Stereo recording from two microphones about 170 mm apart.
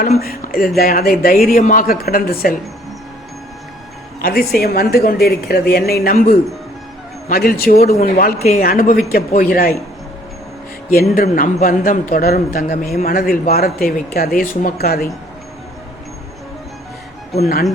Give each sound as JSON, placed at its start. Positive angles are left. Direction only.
{"t": 0.2, "sound": "a woman's voice", "side_deg": 60}
{"t": 4.2, "sound": "a woman's voice", "side_deg": 60}
{"t": 10.9, "sound": "a woman's voice", "side_deg": 55}